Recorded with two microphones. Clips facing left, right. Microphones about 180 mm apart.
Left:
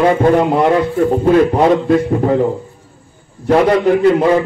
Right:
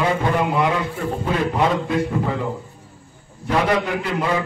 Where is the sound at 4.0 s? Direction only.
50° left (ahead or behind).